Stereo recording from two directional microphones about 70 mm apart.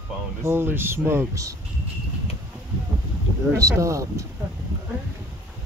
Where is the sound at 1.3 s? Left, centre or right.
Right.